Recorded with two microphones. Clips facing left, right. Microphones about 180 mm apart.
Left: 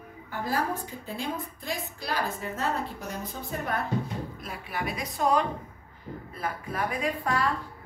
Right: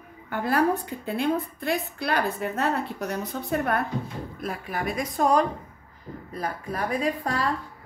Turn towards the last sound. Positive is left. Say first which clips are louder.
# right 2 dB
turn(degrees=-35)  # may be behind; listen again after turning